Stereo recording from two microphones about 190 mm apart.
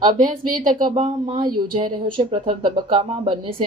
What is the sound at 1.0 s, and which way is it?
Speech, 25° right (ahead or behind).